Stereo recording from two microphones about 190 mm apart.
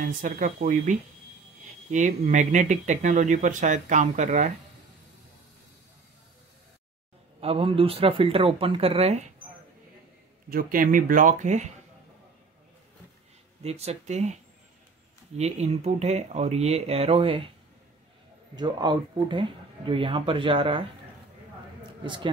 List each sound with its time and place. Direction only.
0.0 s speech: 45° right (ahead or behind)
7.3 s speech: 30° right (ahead or behind)
10.5 s speech: 50° right (ahead or behind)
13.6 s speech: 35° right (ahead or behind)
15.3 s speech: 35° right (ahead or behind)
18.6 s speech: 25° right (ahead or behind)
22.0 s speech: 25° right (ahead or behind)